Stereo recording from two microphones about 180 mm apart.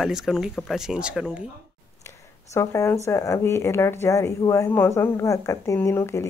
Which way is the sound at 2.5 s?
15° left (ahead or behind).